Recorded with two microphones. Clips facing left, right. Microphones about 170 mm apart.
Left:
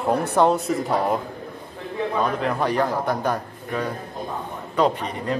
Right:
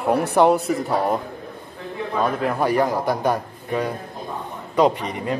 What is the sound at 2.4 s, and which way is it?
A man's voice, 5° right (ahead or behind).